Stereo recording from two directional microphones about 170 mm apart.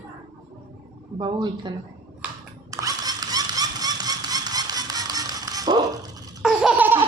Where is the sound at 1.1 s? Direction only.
25° right (ahead or behind).